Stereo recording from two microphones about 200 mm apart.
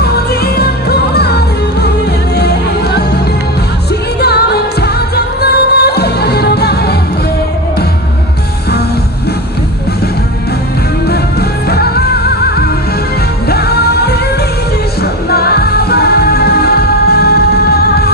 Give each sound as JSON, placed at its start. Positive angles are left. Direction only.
{"t": 0.0, "sound": "music", "side_deg": 50}
{"t": 4.2, "sound": "music", "side_deg": 55}
{"t": 11.1, "sound": "music", "side_deg": 55}
{"t": 13.5, "sound": "music", "side_deg": 50}
{"t": 15.2, "sound": "music", "side_deg": 50}